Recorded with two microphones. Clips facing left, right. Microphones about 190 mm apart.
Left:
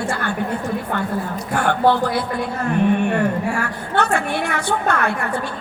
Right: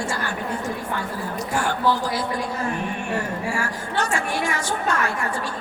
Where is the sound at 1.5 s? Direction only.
60° left (ahead or behind).